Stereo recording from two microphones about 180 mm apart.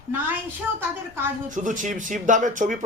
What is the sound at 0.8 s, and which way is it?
Speech, 15° right (ahead or behind).